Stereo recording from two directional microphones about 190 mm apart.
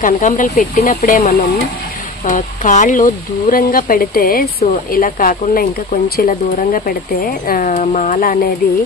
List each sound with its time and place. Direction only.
0.0 s speech: 45° left (ahead or behind)